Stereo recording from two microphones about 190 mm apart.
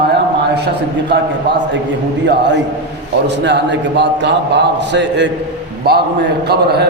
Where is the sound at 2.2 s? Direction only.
65° right (ahead or behind).